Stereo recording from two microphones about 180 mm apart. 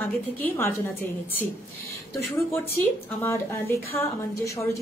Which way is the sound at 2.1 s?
15° left (ahead or behind).